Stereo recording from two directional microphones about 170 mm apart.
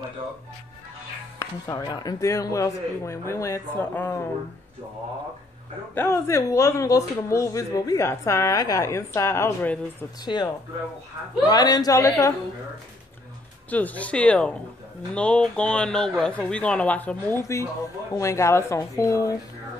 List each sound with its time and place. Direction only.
1.4 s speech: 25° left (ahead or behind)
5.9 s speech: 15° left (ahead or behind)
10.2 s a woman's voice: 25° left (ahead or behind)
13.7 s speech: 10° left (ahead or behind)